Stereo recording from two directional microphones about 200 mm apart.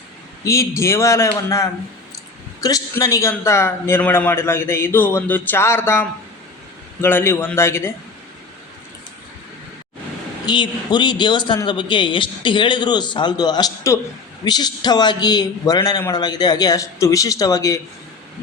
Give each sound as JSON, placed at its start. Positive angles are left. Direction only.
{"t": 0.4, "sound": "a man's voice", "side_deg": 15}
{"t": 10.4, "sound": "a man's voice", "side_deg": 20}